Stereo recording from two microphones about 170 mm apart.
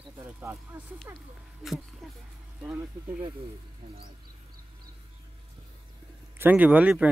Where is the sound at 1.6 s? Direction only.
5° right (ahead or behind).